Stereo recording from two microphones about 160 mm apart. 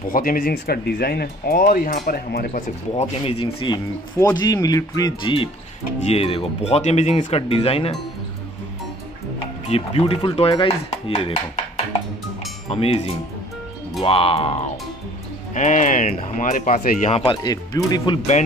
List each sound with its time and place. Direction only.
0.1 s speech: 60° left (ahead or behind)
3.0 s speech: 35° left (ahead or behind)
9.7 s speech: 35° left (ahead or behind)
12.6 s speech: 40° left (ahead or behind)
15.5 s speech: 50° left (ahead or behind)
17.1 s speech: 35° left (ahead or behind)